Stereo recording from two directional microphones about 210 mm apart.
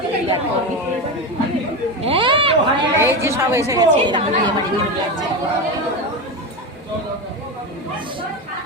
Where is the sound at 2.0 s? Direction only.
25° right (ahead or behind).